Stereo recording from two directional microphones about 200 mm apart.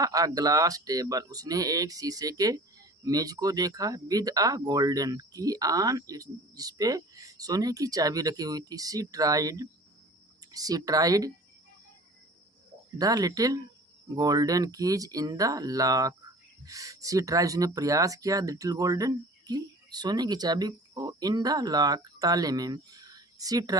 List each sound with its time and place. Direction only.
0.0 s speech: 15° right (ahead or behind)
13.0 s speech: 20° right (ahead or behind)